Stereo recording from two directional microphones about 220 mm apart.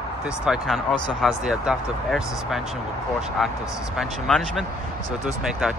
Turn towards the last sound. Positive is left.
turn(degrees=0)  # may be behind; listen again after turning